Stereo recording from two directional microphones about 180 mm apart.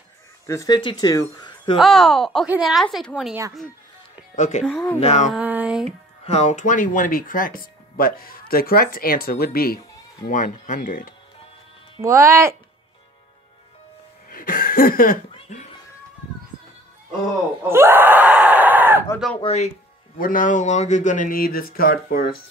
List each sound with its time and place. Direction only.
0.5 s speech: 20° left (ahead or behind)
1.8 s a woman's voice: centre (ahead or behind)
4.4 s speech: 40° left (ahead or behind)
4.6 s speech: 5° left (ahead or behind)
4.9 s speech: 35° left (ahead or behind)
5.3 s speech: 10° right (ahead or behind)
6.2 s speech: 40° left (ahead or behind); by 9.8 s 55° left (ahead or behind)
10.2 s speech: 45° left (ahead or behind)
12.0 s speech: 15° right (ahead or behind)
14.3 s a sound: 50° left (ahead or behind)
17.6 s screaming: 15° right (ahead or behind)
19.4 s speech: 35° left (ahead or behind)
20.2 s speech: 50° left (ahead or behind)